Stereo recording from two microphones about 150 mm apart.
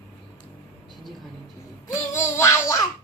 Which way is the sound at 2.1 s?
20° left (ahead or behind).